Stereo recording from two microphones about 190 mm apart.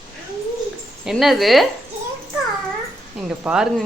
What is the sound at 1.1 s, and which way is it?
Speech, centre (ahead or behind).